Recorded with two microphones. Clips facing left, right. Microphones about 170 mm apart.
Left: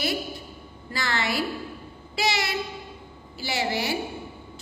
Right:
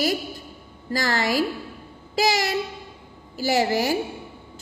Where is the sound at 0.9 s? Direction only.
40° right (ahead or behind).